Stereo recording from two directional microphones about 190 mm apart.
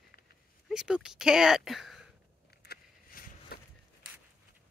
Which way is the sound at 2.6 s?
55° left (ahead or behind).